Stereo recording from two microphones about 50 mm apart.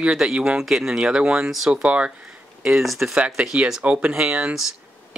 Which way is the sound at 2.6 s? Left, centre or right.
Centre.